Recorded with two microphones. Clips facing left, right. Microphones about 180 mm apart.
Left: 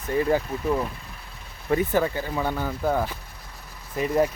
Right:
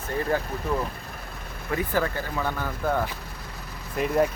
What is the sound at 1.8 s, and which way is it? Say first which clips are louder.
Speech: even; 20° left (ahead or behind).